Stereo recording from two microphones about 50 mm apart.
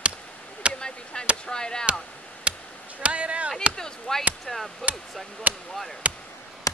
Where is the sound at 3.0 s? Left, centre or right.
Right.